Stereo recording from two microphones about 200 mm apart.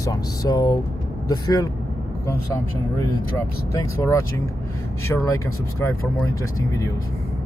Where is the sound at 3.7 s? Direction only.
15° left (ahead or behind).